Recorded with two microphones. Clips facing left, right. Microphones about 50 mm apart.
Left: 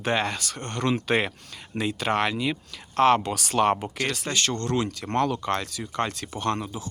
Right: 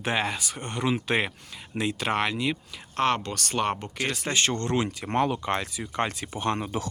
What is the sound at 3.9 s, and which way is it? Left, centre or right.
Speech, centre.